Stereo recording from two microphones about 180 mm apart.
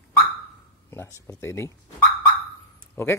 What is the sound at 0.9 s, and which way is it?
Speech, 15° left (ahead or behind).